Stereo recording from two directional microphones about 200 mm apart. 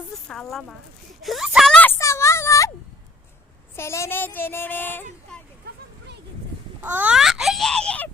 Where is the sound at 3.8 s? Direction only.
15° left (ahead or behind).